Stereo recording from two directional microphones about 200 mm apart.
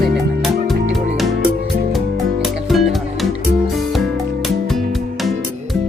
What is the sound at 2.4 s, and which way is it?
Music, centre (ahead or behind).